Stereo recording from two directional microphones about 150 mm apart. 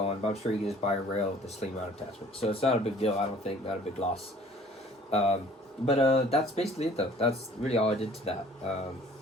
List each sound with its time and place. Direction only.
0.0 s speech: 45° left (ahead or behind)